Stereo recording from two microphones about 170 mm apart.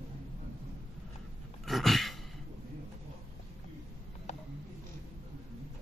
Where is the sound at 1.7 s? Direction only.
Centre (ahead or behind).